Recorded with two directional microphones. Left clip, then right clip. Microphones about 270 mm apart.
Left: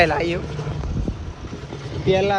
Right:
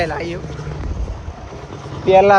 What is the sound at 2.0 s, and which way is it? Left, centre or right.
Speech, centre.